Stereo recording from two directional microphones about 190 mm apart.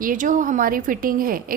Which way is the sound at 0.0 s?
45° right (ahead or behind).